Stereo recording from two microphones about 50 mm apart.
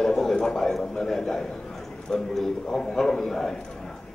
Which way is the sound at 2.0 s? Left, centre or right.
Centre.